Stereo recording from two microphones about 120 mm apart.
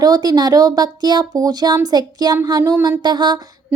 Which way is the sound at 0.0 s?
30° right (ahead or behind).